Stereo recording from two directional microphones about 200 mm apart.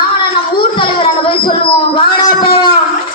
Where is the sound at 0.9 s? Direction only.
25° left (ahead or behind).